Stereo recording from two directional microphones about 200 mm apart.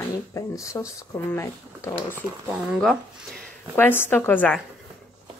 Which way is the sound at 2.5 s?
Centre (ahead or behind).